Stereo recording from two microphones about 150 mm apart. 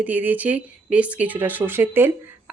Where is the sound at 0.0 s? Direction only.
10° right (ahead or behind).